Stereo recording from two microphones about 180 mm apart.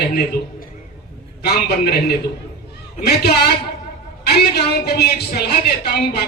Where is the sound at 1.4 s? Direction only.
60° left (ahead or behind).